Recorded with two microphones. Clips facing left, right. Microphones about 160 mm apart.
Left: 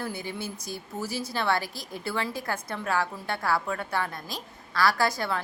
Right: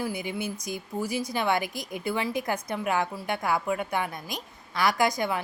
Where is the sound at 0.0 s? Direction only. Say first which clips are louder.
Right 3 dB; 15° right (ahead or behind).